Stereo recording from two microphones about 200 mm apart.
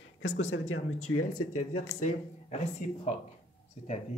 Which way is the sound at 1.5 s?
35° left (ahead or behind).